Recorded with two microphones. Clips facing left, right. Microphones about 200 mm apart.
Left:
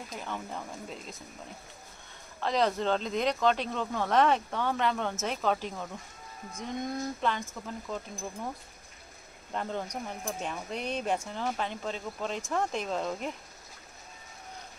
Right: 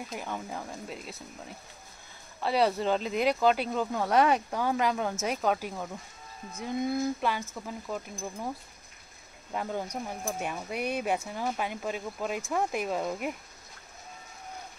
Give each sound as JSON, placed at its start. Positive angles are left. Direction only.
{"t": 0.1, "sound": "speech", "side_deg": -10}
{"t": 2.4, "sound": "speech", "side_deg": -5}
{"t": 9.5, "sound": "speech", "side_deg": -10}